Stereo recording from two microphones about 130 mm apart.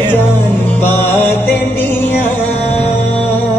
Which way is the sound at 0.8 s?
15° left (ahead or behind).